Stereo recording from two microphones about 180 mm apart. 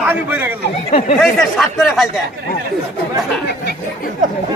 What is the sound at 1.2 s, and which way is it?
Speech, centre (ahead or behind).